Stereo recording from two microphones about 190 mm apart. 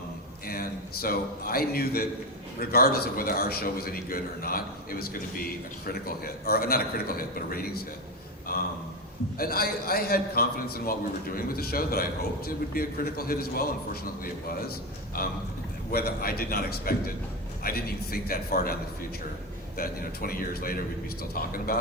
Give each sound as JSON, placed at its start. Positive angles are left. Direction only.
{"t": 0.4, "sound": "a man's voice", "side_deg": 50}